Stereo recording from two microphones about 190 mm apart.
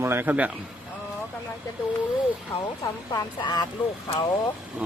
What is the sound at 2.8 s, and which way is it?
Speech, 20° left (ahead or behind).